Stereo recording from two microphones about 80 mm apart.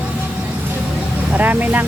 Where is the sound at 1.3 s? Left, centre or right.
Right.